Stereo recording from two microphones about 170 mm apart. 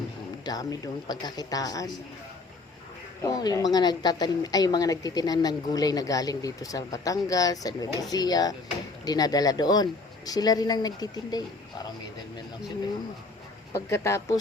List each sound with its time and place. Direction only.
0.4 s a woman's voice: 20° left (ahead or behind)
3.2 s a woman's voice: 20° left (ahead or behind)
13.7 s speech: 15° left (ahead or behind)